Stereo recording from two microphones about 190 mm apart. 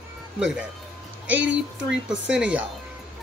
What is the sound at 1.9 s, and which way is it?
Speech, 5° right (ahead or behind).